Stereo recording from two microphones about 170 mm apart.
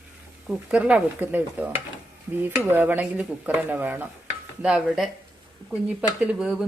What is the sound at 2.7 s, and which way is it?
Speech, 10° right (ahead or behind).